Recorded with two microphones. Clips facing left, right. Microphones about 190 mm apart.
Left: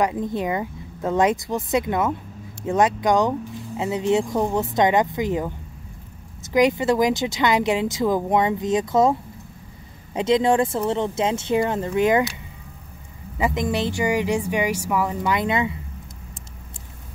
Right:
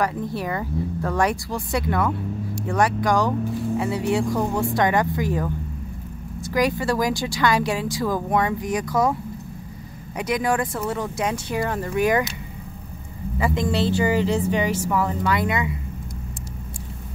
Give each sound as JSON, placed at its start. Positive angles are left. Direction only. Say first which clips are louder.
{"t": 0.0, "sound": "speech", "louder": "left 2 dB", "side_deg": 20}
{"t": 10.1, "sound": "speech", "louder": "left 5 dB", "side_deg": 25}
{"t": 13.4, "sound": "speech", "louder": "even", "side_deg": 20}